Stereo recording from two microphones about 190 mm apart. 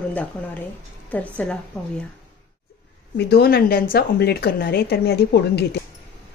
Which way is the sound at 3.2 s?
55° left (ahead or behind).